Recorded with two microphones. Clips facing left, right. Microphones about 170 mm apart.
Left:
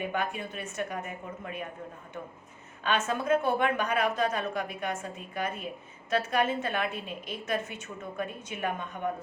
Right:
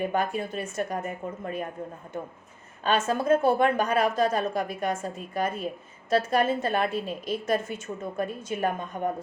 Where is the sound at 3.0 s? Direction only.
40° right (ahead or behind).